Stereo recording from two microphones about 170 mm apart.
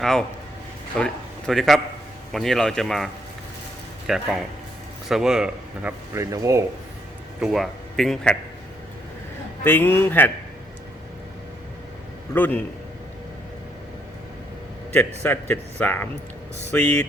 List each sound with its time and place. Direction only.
0.0 s a man's voice: 5° left (ahead or behind)
6.1 s speech: 20° right (ahead or behind)
7.3 s a man's voice: centre (ahead or behind)
9.6 s a man's voice: 10° left (ahead or behind)
12.3 s a man's voice: 10° left (ahead or behind)
14.9 s a man's voice: 10° left (ahead or behind)